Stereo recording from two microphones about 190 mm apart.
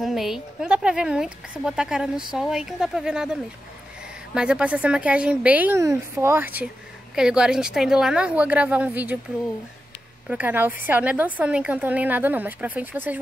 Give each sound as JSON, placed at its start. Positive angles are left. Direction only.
{"t": 0.0, "sound": "a woman's voice", "side_deg": 0}
{"t": 10.3, "sound": "a woman's voice", "side_deg": -10}